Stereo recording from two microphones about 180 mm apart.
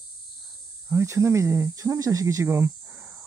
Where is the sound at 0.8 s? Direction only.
15° right (ahead or behind).